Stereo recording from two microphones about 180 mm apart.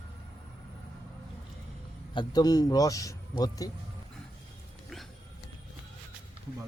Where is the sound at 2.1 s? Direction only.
25° left (ahead or behind).